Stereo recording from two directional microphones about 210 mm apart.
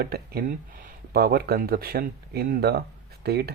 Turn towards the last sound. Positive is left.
turn(degrees=-50)  # may be behind; listen again after turning